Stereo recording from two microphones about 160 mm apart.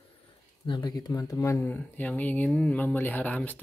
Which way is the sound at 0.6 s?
30° left (ahead or behind).